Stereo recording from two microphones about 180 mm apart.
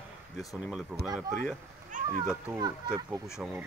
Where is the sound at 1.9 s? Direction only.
45° right (ahead or behind).